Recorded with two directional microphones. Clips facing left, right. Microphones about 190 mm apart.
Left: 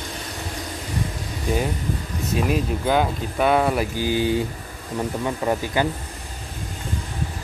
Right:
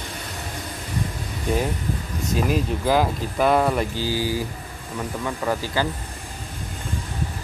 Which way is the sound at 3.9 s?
20° left (ahead or behind).